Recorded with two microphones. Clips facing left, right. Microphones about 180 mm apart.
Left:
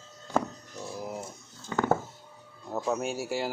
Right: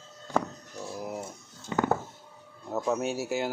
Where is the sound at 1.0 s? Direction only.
5° right (ahead or behind).